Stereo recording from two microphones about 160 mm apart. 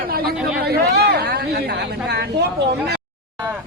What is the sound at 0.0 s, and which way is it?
Chatter, 65° right (ahead or behind).